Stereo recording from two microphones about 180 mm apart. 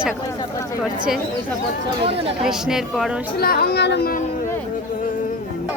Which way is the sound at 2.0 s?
35° right (ahead or behind).